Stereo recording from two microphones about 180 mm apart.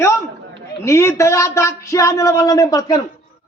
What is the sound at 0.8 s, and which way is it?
Speech, 15° left (ahead or behind).